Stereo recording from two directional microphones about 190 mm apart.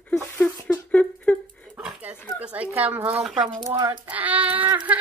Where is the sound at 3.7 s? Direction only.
10° right (ahead or behind).